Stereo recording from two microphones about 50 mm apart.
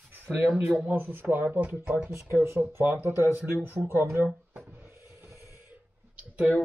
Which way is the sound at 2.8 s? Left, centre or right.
Right.